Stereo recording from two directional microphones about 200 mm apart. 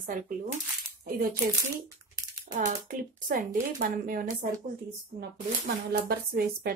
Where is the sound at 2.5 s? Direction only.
45° right (ahead or behind).